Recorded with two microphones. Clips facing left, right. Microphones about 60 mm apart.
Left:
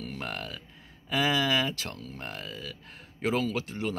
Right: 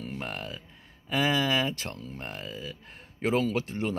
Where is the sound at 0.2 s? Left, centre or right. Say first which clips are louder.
Even; centre.